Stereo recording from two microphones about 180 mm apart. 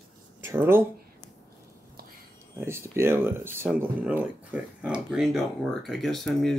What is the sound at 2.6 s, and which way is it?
Speech, 15° right (ahead or behind).